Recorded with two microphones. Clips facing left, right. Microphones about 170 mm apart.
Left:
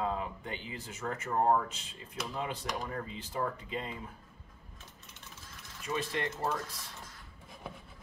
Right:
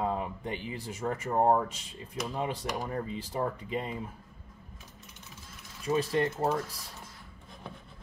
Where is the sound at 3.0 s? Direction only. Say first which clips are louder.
Right 3 dB; 30° right (ahead or behind).